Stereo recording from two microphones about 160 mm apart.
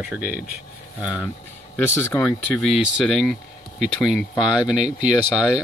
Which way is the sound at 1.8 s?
15° left (ahead or behind).